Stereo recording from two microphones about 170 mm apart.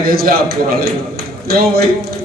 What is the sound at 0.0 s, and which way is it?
A man's voice, 60° right (ahead or behind).